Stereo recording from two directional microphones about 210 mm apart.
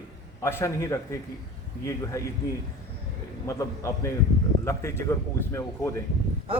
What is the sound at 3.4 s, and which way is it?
Speech, 15° left (ahead or behind).